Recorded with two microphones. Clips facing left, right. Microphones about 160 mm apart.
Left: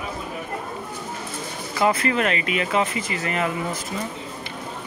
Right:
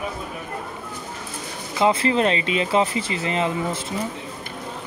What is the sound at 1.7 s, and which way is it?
Speech, 25° right (ahead or behind).